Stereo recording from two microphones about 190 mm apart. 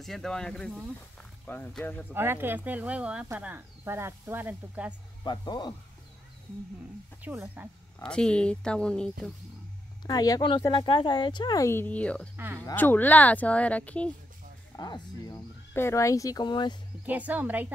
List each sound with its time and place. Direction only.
0.0 s speech: centre (ahead or behind)
2.1 s speech: 10° right (ahead or behind)
5.2 s speech: 20° left (ahead or behind)
7.2 s speech: 10° right (ahead or behind)
8.0 s speech: 5° left (ahead or behind)
10.0 s speech: 20° left (ahead or behind)
12.4 s speech: 10° right (ahead or behind)
12.6 s speech: 10° left (ahead or behind)
14.8 s speech: 20° left (ahead or behind)
17.0 s speech: 10° right (ahead or behind)